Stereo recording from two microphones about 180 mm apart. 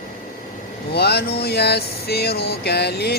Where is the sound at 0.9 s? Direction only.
65° left (ahead or behind).